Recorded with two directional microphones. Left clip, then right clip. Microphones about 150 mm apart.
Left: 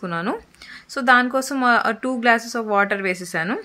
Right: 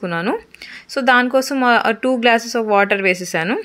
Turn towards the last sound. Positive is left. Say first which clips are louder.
# right 5 dB
turn(degrees=-15)  # may be behind; listen again after turning